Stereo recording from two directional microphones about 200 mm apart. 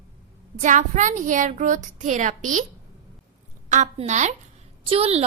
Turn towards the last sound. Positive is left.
turn(degrees=-30)  # may be behind; listen again after turning